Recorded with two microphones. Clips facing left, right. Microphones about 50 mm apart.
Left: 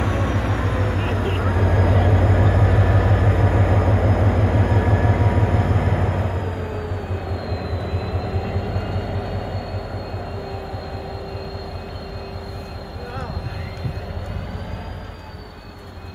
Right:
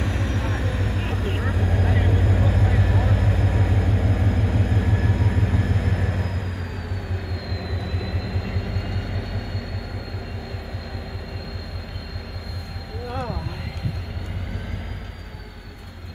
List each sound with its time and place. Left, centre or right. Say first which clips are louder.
0.0 s vehicle: left 5 dB; left